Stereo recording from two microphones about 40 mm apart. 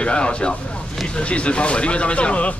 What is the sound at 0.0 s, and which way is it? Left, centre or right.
Speech, left.